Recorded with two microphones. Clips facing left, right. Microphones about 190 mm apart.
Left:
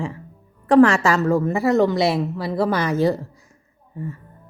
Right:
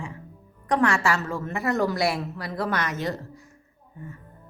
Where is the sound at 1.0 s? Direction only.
40° left (ahead or behind).